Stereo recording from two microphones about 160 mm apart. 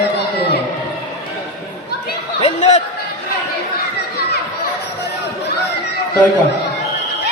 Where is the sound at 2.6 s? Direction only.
45° left (ahead or behind).